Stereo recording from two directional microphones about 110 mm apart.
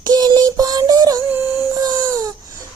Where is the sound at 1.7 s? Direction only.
35° right (ahead or behind).